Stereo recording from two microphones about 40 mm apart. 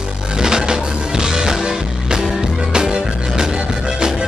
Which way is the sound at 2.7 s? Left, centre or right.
Centre.